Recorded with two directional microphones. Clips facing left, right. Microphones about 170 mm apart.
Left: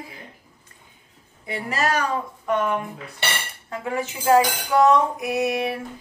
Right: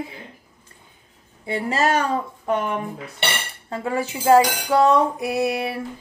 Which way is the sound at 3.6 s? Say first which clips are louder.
Right 3 dB; 30° right (ahead or behind).